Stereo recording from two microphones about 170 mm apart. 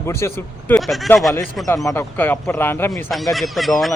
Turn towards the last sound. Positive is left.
turn(degrees=0)  # may be behind; listen again after turning